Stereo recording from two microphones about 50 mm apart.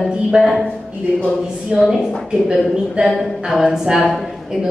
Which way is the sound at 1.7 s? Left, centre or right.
Centre.